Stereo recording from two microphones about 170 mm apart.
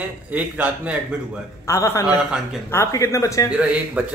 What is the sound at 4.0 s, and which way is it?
Speech, 10° right (ahead or behind).